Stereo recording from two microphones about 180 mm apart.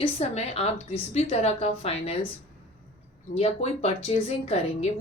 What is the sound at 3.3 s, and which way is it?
A woman's voice, 35° left (ahead or behind).